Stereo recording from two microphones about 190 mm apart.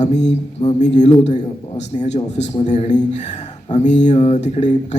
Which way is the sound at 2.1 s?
35° left (ahead or behind).